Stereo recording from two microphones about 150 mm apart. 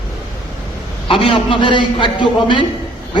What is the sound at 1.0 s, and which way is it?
A man's voice, 35° left (ahead or behind).